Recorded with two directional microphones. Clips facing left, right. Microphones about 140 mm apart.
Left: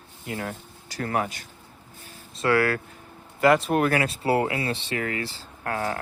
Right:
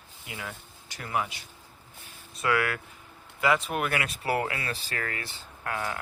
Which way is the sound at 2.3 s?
30° left (ahead or behind).